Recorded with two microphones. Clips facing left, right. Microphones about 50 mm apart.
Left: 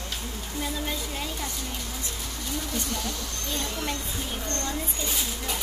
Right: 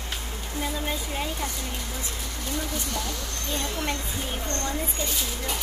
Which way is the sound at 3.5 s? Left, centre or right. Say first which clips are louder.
Right 2 dB; centre.